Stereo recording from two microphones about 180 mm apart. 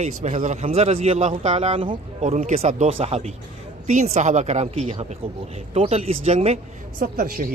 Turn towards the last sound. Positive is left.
turn(degrees=-55)  # may be behind; listen again after turning